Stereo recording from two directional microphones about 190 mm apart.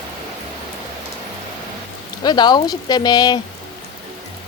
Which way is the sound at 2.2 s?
20° left (ahead or behind).